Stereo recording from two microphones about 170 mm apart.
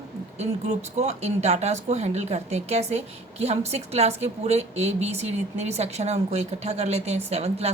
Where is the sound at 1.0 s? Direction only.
40° right (ahead or behind).